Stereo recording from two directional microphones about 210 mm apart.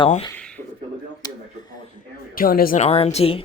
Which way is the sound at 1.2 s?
20° left (ahead or behind).